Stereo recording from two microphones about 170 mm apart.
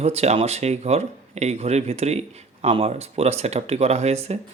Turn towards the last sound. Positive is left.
turn(degrees=-40)  # may be behind; listen again after turning